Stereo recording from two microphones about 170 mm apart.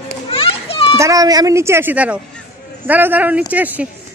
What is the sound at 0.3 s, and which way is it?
Children playing, 35° left (ahead or behind).